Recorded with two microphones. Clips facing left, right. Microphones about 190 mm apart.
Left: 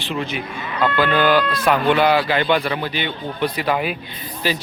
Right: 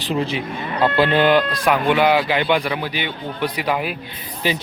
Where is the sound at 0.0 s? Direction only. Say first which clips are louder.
Right 3 dB; 35° right (ahead or behind).